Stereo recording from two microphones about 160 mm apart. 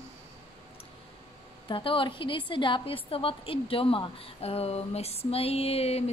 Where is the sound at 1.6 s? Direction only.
30° left (ahead or behind).